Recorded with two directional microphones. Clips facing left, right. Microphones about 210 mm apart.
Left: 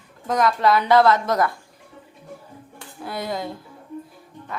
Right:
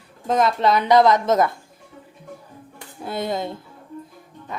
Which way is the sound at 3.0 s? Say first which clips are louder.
Right 3 dB; 25° right (ahead or behind).